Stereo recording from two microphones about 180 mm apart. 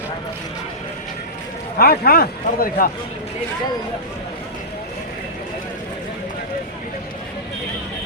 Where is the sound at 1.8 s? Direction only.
55° left (ahead or behind).